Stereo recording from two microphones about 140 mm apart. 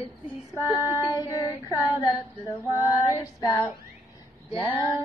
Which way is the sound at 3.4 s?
20° left (ahead or behind).